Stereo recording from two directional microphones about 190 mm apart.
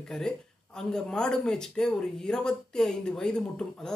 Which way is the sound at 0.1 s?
5° left (ahead or behind).